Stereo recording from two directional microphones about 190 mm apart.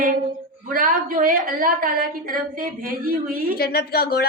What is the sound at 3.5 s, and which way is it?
Speech, 55° left (ahead or behind).